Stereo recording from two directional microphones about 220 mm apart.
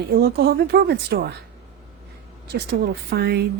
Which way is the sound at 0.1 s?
45° right (ahead or behind).